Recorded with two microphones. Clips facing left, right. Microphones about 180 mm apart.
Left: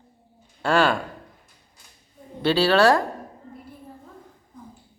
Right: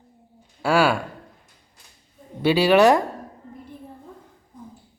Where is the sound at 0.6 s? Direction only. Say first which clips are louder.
Right 1 dB; 10° right (ahead or behind).